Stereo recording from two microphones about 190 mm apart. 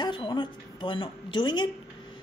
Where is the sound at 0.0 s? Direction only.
25° left (ahead or behind).